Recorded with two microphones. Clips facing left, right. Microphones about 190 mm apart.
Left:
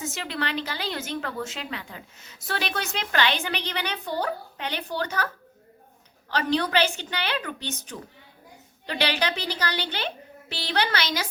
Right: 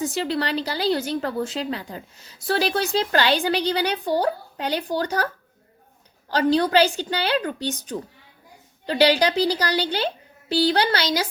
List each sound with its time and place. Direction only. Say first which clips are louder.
0.0 s a woman's voice: right 7 dB; 35° right (ahead or behind)
6.3 s a woman's voice: right 6 dB; 30° right (ahead or behind)